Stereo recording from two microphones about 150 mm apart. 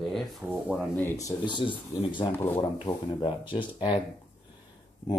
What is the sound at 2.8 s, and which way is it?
Speech, 30° left (ahead or behind).